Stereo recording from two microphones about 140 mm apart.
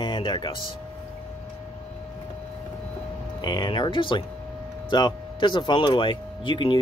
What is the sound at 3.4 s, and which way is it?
Speech, 30° left (ahead or behind).